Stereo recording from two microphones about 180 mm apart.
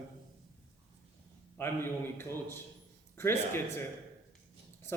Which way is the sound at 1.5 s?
15° left (ahead or behind).